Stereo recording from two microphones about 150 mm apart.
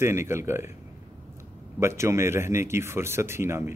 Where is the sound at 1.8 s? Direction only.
20° right (ahead or behind).